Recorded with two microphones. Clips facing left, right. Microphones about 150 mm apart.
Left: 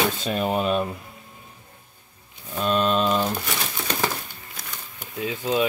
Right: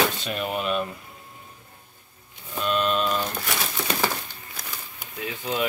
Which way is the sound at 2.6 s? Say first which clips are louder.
Left 3 dB; 35° left (ahead or behind).